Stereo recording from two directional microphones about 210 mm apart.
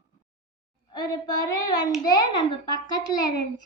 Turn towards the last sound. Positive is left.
turn(degrees=20)  # may be behind; listen again after turning